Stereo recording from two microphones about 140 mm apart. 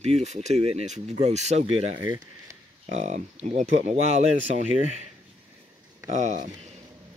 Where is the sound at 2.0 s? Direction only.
25° right (ahead or behind).